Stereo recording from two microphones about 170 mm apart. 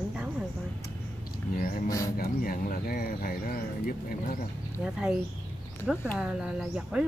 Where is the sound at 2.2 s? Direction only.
60° left (ahead or behind).